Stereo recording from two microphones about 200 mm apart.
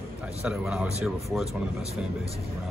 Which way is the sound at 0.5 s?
5° right (ahead or behind).